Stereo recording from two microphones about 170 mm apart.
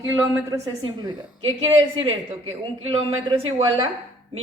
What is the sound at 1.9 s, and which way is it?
A woman's voice, 35° right (ahead or behind).